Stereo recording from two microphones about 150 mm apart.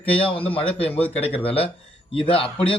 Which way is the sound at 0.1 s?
35° left (ahead or behind).